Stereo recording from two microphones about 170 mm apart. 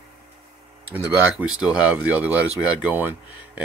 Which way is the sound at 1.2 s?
5° right (ahead or behind).